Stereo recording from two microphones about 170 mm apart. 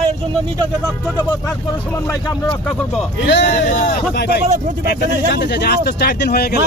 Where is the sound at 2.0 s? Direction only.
25° left (ahead or behind).